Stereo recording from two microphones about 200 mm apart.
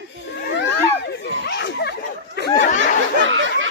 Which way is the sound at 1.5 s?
60° left (ahead or behind).